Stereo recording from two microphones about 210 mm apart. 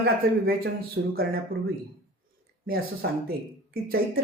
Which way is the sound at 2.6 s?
45° right (ahead or behind).